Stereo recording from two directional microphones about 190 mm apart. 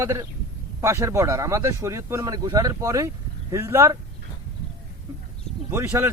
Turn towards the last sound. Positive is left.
turn(degrees=-15)  # may be behind; listen again after turning